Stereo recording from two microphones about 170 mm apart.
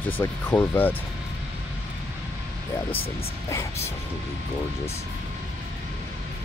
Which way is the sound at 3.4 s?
20° left (ahead or behind).